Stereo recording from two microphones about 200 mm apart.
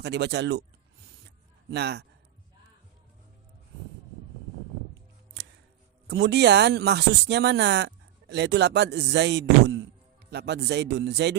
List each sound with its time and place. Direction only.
0.0 s speech: 60° right (ahead or behind)
1.7 s speech: 55° right (ahead or behind)
6.1 s speech: 60° right (ahead or behind)